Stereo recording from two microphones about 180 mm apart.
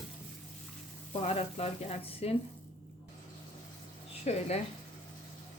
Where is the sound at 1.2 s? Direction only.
35° left (ahead or behind).